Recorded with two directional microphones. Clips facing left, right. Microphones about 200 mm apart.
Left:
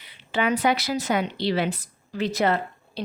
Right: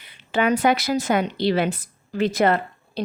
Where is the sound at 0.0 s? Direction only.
45° right (ahead or behind).